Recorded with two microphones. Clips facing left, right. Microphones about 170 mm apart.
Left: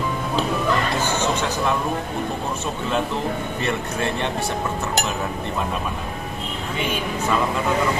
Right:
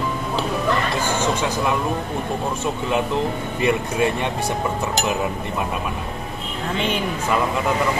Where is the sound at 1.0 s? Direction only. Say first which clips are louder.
Right 1 dB; 10° right (ahead or behind).